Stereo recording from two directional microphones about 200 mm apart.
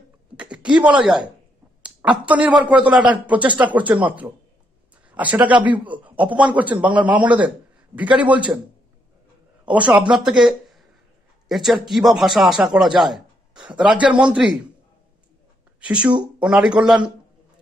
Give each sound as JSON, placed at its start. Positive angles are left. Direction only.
{"t": 0.4, "sound": "a sound", "side_deg": -5}
{"t": 2.6, "sound": "a man's voice", "side_deg": -5}
{"t": 9.7, "sound": "a man's voice", "side_deg": -5}
{"t": 10.4, "sound": "a sound", "side_deg": 0}
{"t": 11.4, "sound": "a man's voice", "side_deg": 0}
{"t": 13.6, "sound": "speech", "side_deg": -20}
{"t": 13.8, "sound": "a man's voice", "side_deg": -5}
{"t": 15.8, "sound": "a man's voice", "side_deg": -5}